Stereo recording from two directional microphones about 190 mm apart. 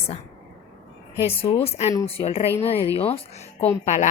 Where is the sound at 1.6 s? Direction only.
35° left (ahead or behind).